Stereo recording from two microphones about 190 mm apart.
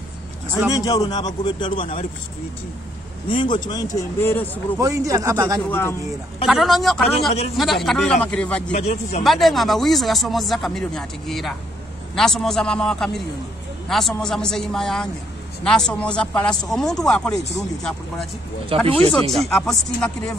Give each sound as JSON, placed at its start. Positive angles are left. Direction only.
{"t": 0.7, "sound": "speech", "side_deg": 20}
{"t": 3.3, "sound": "speech", "side_deg": 25}
{"t": 4.7, "sound": "a man's voice", "side_deg": -15}
{"t": 5.7, "sound": "speech", "side_deg": 10}
{"t": 6.4, "sound": "speech", "side_deg": 0}
{"t": 8.7, "sound": "speech", "side_deg": 35}
{"t": 9.2, "sound": "speech", "side_deg": 0}
{"t": 18.7, "sound": "speech", "side_deg": -30}
{"t": 19.3, "sound": "speech", "side_deg": 0}